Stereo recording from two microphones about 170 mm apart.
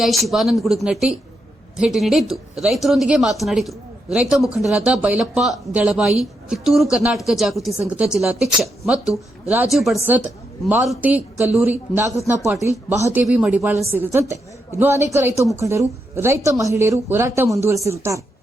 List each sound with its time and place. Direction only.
0.0 s a woman's voice: centre (ahead or behind)
13.1 s a woman's voice: 5° right (ahead or behind)